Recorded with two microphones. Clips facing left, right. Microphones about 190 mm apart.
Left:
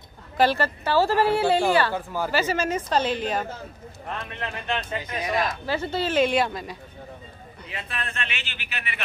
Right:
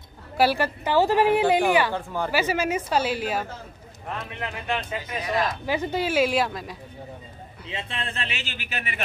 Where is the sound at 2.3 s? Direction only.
10° right (ahead or behind).